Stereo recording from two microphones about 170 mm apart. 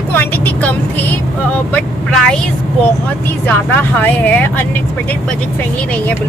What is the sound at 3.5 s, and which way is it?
Speech, 10° left (ahead or behind).